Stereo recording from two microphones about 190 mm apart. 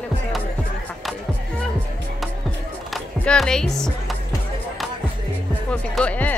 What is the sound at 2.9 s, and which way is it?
Music, 5° left (ahead or behind).